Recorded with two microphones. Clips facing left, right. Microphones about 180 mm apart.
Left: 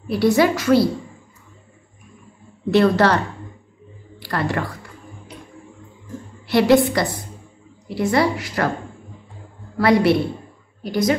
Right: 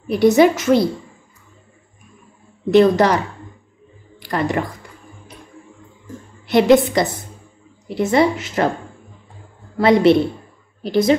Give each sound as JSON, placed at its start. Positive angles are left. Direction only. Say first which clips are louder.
{"t": 0.1, "sound": "a woman's voice", "louder": "right 4 dB", "side_deg": -20}
{"t": 2.7, "sound": "a woman's voice", "louder": "right 3 dB", "side_deg": -15}
{"t": 4.2, "sound": "speech", "louder": "right 3 dB", "side_deg": -20}
{"t": 6.4, "sound": "a woman's voice", "louder": "right 2 dB", "side_deg": -20}
{"t": 9.8, "sound": "a woman's voice", "louder": "right 3 dB", "side_deg": -20}